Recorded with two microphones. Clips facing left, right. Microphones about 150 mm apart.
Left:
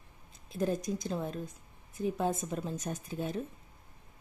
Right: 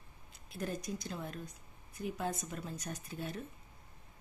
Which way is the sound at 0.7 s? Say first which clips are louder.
Left 5 dB; 45° left (ahead or behind).